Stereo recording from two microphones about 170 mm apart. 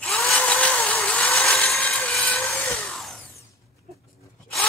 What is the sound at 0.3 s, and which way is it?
Vehicle, 5° left (ahead or behind).